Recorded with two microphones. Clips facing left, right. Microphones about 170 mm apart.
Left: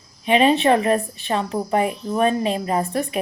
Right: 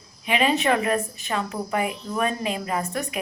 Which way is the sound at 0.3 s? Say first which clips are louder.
Left 6 dB; 30° left (ahead or behind).